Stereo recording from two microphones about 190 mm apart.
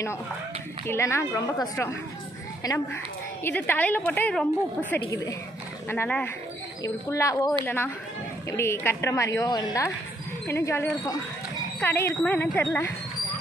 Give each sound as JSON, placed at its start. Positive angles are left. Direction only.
{"t": 0.8, "sound": "a woman's voice", "side_deg": 15}